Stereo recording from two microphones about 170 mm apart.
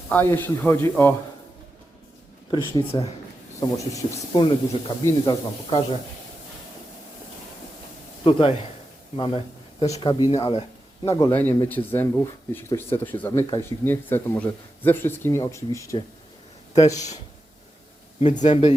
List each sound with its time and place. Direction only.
0.1 s speech: 10° left (ahead or behind)
2.5 s speech: 25° left (ahead or behind)
8.2 s speech: 30° left (ahead or behind)
11.2 s speech: 10° left (ahead or behind)
18.2 s speech: 40° left (ahead or behind)